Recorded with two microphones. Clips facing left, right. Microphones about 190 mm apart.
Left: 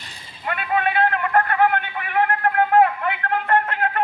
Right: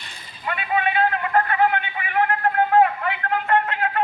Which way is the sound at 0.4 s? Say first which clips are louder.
Left 1 dB; 50° left (ahead or behind).